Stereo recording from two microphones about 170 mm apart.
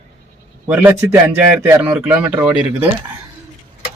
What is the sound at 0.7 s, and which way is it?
A man's voice, 10° right (ahead or behind).